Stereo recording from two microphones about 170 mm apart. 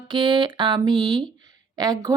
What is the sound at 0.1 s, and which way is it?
Speech, 25° right (ahead or behind).